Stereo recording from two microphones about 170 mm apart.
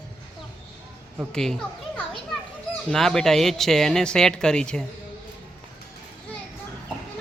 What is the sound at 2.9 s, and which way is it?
Speech, 5° left (ahead or behind).